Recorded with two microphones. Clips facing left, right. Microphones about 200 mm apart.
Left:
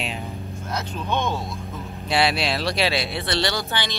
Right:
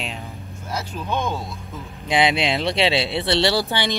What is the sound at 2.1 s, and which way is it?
Speech, 20° right (ahead or behind).